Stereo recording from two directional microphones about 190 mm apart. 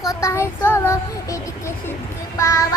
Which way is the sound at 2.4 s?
15° left (ahead or behind).